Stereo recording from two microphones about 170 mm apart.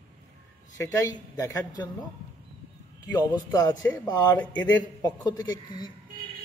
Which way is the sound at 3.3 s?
20° left (ahead or behind).